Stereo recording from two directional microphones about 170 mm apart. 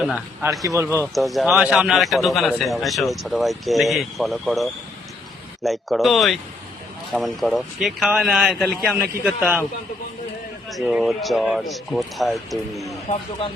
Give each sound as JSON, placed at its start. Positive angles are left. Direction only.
{"t": 0.6, "sound": "a man's voice", "side_deg": -15}
{"t": 1.1, "sound": "a man's voice", "side_deg": 0}
{"t": 10.7, "sound": "a man's voice", "side_deg": -5}